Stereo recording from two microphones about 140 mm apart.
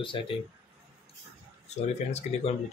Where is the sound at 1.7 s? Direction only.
50° left (ahead or behind).